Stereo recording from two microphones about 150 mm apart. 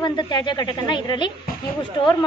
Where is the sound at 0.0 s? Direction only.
30° left (ahead or behind).